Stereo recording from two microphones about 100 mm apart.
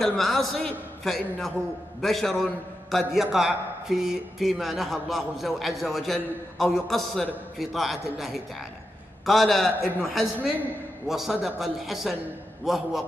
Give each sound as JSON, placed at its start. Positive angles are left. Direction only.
{"t": 0.0, "sound": "a man's voice", "side_deg": 0}